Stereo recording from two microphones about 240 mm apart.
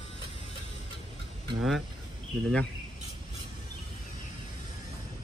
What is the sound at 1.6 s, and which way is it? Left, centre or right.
Speech, centre.